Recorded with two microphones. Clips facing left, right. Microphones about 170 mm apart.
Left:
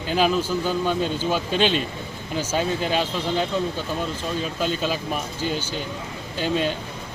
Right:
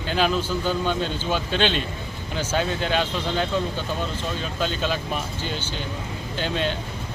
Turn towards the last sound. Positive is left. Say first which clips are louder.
# left 2 dB
turn(degrees=5)  # may be behind; listen again after turning